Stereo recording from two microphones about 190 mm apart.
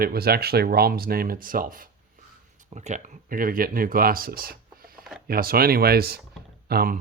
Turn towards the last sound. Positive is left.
turn(degrees=-50)  # may be behind; listen again after turning